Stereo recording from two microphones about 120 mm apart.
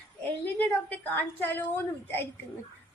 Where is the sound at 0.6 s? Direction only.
15° left (ahead or behind).